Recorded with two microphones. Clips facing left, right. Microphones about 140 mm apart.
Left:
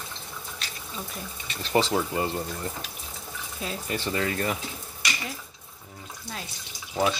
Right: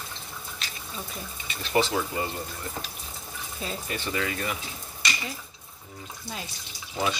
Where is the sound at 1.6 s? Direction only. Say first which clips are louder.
Left 1 dB; 30° left (ahead or behind).